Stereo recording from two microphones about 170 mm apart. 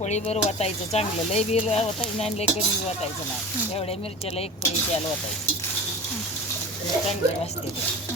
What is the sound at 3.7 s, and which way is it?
Speech, 35° left (ahead or behind).